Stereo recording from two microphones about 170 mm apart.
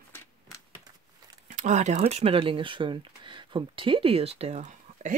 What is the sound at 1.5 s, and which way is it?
Speech, 45° right (ahead or behind).